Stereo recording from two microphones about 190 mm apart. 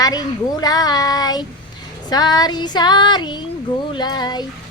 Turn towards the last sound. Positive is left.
turn(degrees=20)  # may be behind; listen again after turning